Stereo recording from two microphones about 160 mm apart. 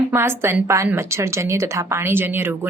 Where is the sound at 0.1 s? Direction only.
15° right (ahead or behind).